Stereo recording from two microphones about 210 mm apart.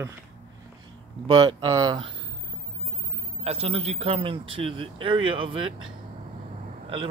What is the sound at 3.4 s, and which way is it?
Speech, 30° right (ahead or behind).